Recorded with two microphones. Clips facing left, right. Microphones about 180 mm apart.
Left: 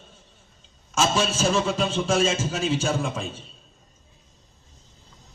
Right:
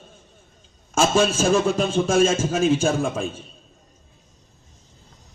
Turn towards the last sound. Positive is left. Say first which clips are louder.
# right 4 dB
turn(degrees=-50)  # may be behind; listen again after turning